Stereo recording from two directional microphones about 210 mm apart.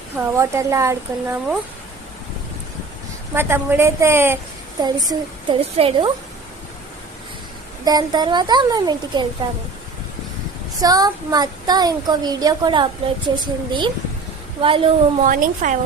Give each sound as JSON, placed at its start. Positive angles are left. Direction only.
{"t": 0.2, "sound": "speech", "side_deg": -15}
{"t": 3.3, "sound": "speech", "side_deg": -10}
{"t": 7.9, "sound": "speech", "side_deg": -20}
{"t": 10.8, "sound": "speech", "side_deg": -15}
{"t": 15.2, "sound": "speech", "side_deg": -40}